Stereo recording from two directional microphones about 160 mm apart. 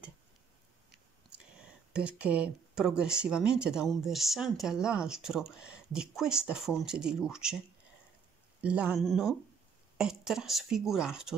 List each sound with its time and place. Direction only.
1.9 s speech: 5° right (ahead or behind)
8.5 s speech: 10° right (ahead or behind)